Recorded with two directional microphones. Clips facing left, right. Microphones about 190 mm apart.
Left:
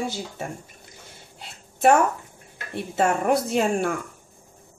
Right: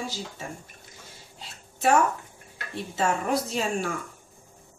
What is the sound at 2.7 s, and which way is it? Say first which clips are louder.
Speech: left 4 dB; 55° left (ahead or behind).